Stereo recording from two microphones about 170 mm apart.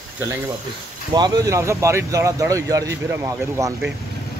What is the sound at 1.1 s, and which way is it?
Speech, 20° right (ahead or behind).